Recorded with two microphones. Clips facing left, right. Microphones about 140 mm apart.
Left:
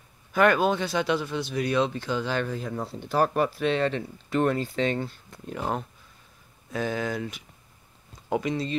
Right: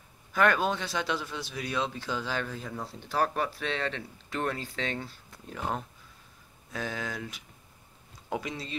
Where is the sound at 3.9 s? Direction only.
5° left (ahead or behind).